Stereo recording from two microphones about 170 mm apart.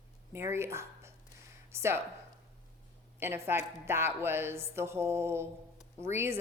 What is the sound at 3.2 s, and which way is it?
A woman's voice, 15° right (ahead or behind).